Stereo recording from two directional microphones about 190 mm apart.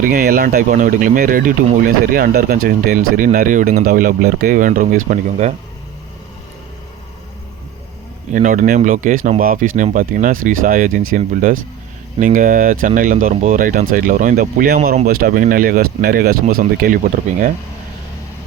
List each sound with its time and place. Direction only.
0.0 s speech: 50° right (ahead or behind)
8.3 s speech: 40° right (ahead or behind)